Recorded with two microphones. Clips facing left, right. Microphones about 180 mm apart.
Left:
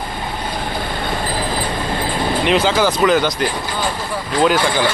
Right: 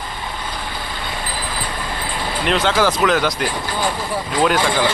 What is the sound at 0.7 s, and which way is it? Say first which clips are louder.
Train: left 6 dB; 50° left (ahead or behind).